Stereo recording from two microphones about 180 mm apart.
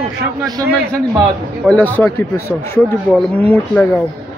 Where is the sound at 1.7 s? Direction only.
10° left (ahead or behind).